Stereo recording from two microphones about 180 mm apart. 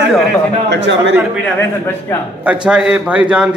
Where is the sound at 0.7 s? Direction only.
80° right.